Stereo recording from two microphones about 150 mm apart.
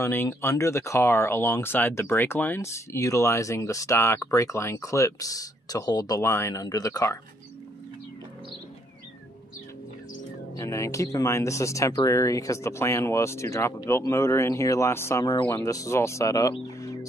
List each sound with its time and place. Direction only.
0.0 s speech: 15° left (ahead or behind)
10.5 s speech: 20° left (ahead or behind)
16.8 s music: 20° left (ahead or behind)